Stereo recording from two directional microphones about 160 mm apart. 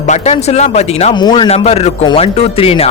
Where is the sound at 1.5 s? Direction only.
40° left (ahead or behind).